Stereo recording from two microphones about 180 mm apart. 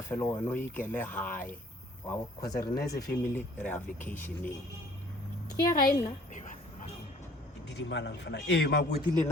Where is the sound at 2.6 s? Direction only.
60° left (ahead or behind).